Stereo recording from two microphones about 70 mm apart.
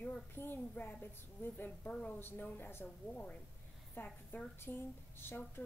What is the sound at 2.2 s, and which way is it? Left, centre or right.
Speech, left.